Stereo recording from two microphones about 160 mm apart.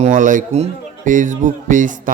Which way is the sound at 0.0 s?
55° right (ahead or behind).